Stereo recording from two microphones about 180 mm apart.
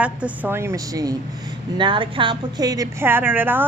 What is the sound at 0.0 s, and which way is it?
A woman's voice, 10° right (ahead or behind).